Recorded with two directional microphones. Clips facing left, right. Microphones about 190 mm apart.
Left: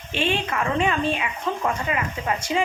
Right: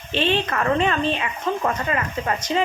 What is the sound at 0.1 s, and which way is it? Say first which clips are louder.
A woman's voice: right 3 dB; 10° left (ahead or behind).